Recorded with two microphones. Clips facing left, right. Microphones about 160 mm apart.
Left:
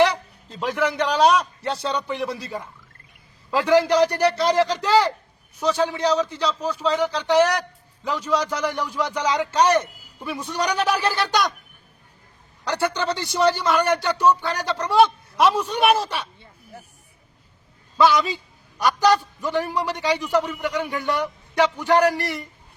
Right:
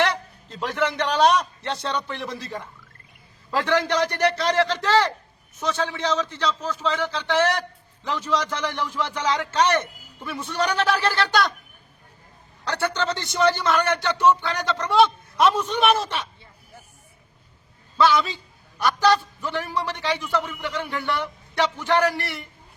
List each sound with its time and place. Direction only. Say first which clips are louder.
0.0 s a man's voice: left 4 dB; 10° left (ahead or behind)
3.7 s a man's voice: left 6 dB; 10° left (ahead or behind)
12.6 s a man's voice: left 2 dB; 10° left (ahead or behind)
17.9 s a man's voice: left 2 dB; 15° left (ahead or behind)